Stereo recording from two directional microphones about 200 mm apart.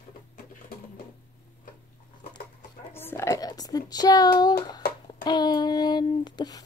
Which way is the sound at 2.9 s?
10° left (ahead or behind).